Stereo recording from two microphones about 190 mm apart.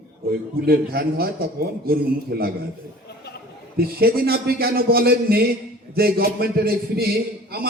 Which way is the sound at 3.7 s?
55° right (ahead or behind).